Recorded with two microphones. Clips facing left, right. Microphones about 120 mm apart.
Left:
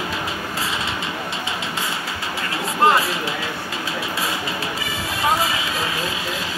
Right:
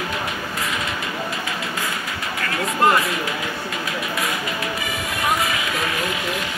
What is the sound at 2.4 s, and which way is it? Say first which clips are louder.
Vehicle: even; 25° left (ahead or behind).